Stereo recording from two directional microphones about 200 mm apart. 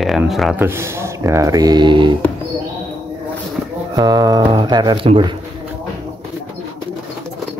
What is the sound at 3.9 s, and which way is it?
Speech, 20° right (ahead or behind).